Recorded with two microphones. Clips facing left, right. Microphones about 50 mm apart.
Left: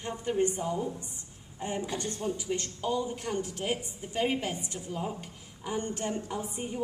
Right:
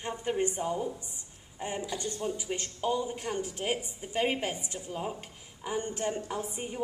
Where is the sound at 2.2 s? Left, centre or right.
Right.